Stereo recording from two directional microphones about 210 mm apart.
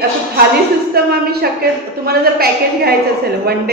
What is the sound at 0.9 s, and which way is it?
A woman's voice, 50° right (ahead or behind).